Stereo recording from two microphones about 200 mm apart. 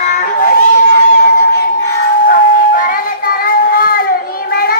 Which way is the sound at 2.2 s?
40° left (ahead or behind).